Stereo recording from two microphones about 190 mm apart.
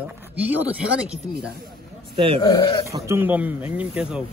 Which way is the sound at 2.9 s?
15° right (ahead or behind).